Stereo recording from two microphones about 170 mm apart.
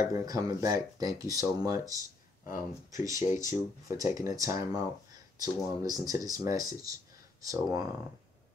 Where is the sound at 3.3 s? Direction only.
50° left (ahead or behind).